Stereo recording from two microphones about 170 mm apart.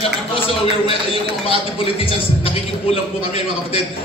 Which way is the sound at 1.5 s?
35° left (ahead or behind).